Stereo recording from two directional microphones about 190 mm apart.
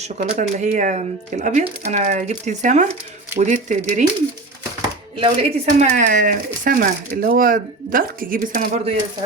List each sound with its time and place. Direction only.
0.0 s speech: 40° right (ahead or behind)
5.1 s speech: 30° right (ahead or behind); by 8.8 s 45° right (ahead or behind)